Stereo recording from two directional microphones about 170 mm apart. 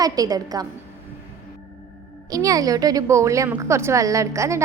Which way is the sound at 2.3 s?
20° right (ahead or behind).